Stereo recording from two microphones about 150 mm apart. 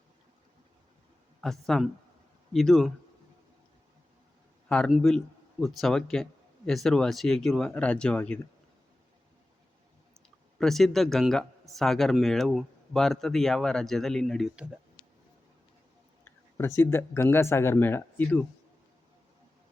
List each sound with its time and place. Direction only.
1.4 s speech: centre (ahead or behind)
4.7 s speech: 5° left (ahead or behind)
10.2 s speech: 5° left (ahead or behind)
16.6 s speech: 15° left (ahead or behind)